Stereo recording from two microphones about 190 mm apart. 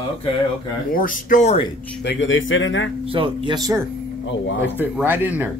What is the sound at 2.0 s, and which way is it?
Speech, 80° left.